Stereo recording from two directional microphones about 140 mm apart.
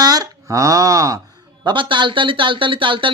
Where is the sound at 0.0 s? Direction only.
25° right (ahead or behind).